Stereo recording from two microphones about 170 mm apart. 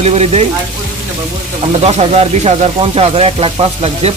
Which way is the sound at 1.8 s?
40° right (ahead or behind).